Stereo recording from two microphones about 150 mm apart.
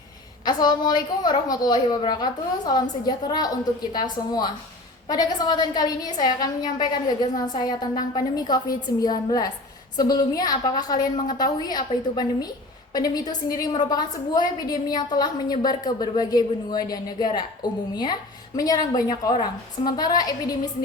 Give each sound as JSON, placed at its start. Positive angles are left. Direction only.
{"t": 0.4, "sound": "a woman's voice", "side_deg": 25}